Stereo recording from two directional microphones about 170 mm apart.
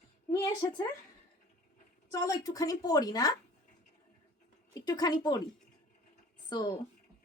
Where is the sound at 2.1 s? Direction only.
20° left (ahead or behind).